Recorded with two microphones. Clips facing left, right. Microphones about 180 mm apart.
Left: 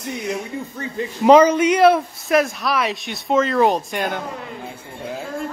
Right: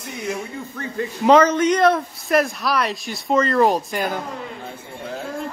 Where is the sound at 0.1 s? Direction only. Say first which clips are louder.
Left 2 dB; centre (ahead or behind).